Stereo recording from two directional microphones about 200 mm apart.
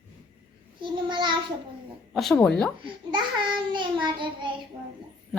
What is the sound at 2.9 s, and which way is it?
A child's voice, 25° right (ahead or behind).